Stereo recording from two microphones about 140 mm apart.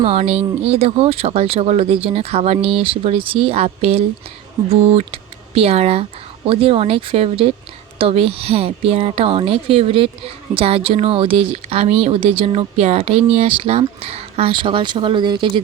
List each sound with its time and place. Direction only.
0.0 s speech: 45° right (ahead or behind)